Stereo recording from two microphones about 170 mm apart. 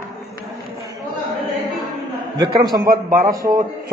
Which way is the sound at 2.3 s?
25° right (ahead or behind).